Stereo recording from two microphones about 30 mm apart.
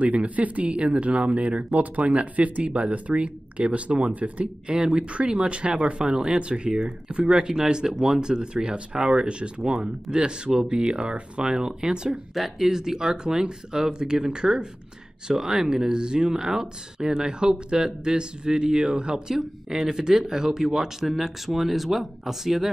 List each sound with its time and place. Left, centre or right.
0.0 s speech: right
1.8 s speech: right
2.7 s speech: right
4.7 s speech: right
7.1 s speech: right
7.3 s speech: right
11.5 s speech: right
19.3 s speech: centre